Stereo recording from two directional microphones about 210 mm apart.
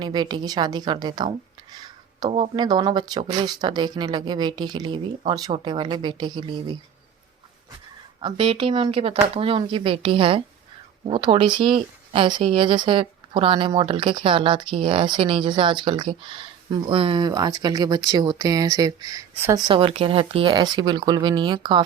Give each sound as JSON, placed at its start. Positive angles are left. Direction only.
{"t": 0.0, "sound": "speech", "side_deg": -20}
{"t": 1.7, "sound": "a sound", "side_deg": -20}
{"t": 2.4, "sound": "speech", "side_deg": -20}
{"t": 8.2, "sound": "speech", "side_deg": -25}